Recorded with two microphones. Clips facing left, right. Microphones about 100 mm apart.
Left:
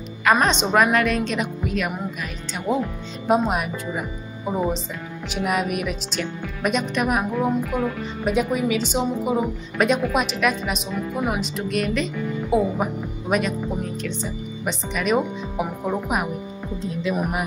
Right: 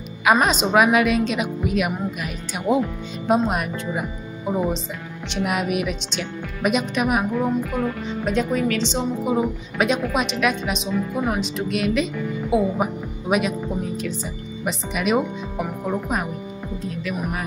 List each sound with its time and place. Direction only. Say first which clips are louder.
0.2 s a woman's voice: right 1 dB; 5° right (ahead or behind)
3.4 s a woman's voice: even; centre (ahead or behind)
15.6 s speech: left 1 dB; 10° left (ahead or behind)
16.8 s speech: left 4 dB; 25° left (ahead or behind)